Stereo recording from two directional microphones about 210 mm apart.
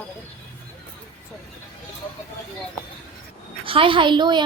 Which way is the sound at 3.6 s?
25° right (ahead or behind).